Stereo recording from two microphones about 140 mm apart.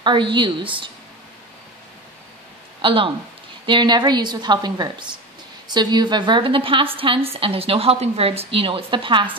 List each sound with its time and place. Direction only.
0.0 s a woman's voice: 35° right (ahead or behind)
2.8 s a woman's voice: 40° right (ahead or behind)